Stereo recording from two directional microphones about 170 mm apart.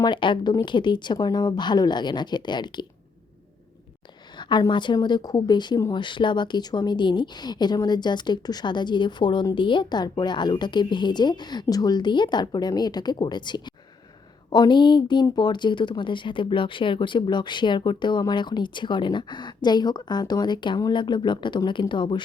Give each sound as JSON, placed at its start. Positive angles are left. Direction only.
{"t": 0.0, "sound": "speech", "side_deg": 30}
{"t": 4.4, "sound": "speech", "side_deg": 25}